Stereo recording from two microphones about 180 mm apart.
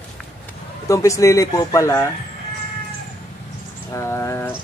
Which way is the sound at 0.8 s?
15° left (ahead or behind).